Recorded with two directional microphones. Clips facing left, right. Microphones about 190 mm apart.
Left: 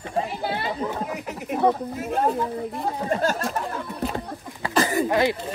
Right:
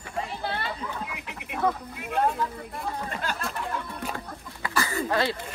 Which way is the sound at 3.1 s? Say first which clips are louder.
Left 9 dB; 40° left (ahead or behind).